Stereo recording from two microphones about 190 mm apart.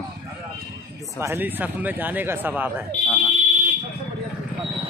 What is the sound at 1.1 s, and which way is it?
Speech, 10° right (ahead or behind).